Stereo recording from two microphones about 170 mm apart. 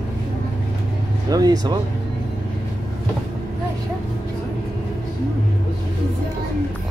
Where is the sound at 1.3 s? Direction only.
25° right (ahead or behind).